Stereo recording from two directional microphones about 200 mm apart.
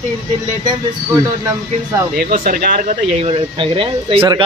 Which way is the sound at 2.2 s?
50° right (ahead or behind).